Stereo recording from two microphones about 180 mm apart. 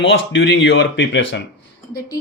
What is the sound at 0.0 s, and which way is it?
Speech, 90° left.